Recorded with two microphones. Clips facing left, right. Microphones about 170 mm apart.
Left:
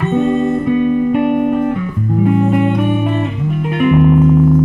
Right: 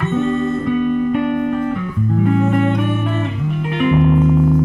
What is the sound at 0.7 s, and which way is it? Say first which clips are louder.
Music: left 3 dB; 20° left (ahead or behind).